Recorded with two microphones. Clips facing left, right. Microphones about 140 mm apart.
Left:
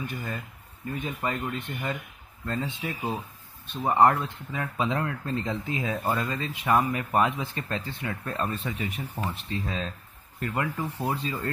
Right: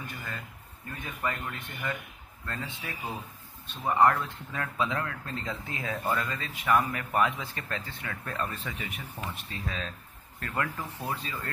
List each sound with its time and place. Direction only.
0.0 s speech: 20° left (ahead or behind)
10.4 s speech: 20° left (ahead or behind)